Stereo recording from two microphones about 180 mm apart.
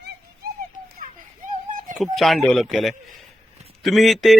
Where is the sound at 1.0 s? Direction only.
50° right (ahead or behind).